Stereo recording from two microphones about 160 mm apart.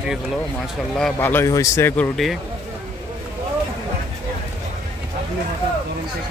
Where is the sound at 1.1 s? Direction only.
15° left (ahead or behind).